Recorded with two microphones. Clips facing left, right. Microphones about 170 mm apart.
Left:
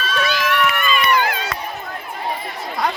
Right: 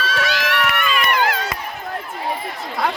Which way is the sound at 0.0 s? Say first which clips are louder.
Left 1 dB; 90° right.